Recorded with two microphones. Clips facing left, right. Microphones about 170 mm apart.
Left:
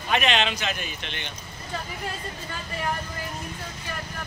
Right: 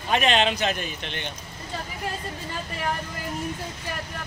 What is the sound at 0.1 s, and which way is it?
Speech, 40° right (ahead or behind).